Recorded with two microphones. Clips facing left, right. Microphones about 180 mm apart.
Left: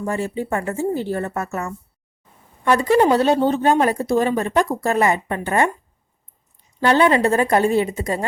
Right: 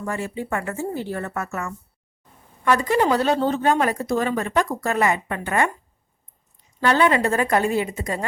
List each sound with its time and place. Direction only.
0.0 s speech: 30° left (ahead or behind)
6.8 s speech: 30° left (ahead or behind)